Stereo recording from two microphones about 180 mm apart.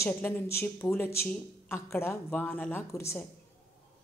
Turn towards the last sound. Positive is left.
turn(degrees=15)  # may be behind; listen again after turning